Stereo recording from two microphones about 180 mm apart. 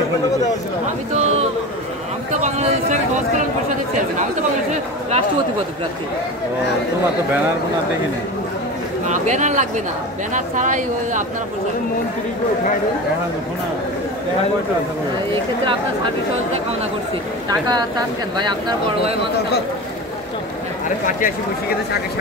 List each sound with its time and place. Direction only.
2.4 s a sound: 40° right (ahead or behind)
4.2 s speech: 40° right (ahead or behind)
9.0 s a woman's voice: 40° right (ahead or behind)
17.5 s speech: 20° right (ahead or behind)